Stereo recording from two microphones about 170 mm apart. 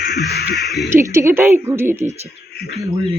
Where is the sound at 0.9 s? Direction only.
15° right (ahead or behind).